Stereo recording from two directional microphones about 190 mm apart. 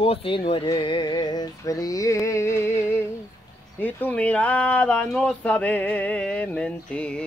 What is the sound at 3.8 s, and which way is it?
Speech, 10° left (ahead or behind).